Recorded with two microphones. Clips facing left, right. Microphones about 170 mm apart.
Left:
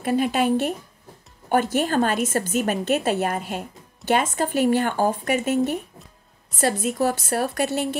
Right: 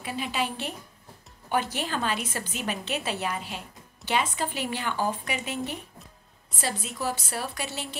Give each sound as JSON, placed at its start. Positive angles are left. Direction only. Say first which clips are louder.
{"t": 0.0, "sound": "a woman's voice", "louder": "left 10 dB", "side_deg": 50}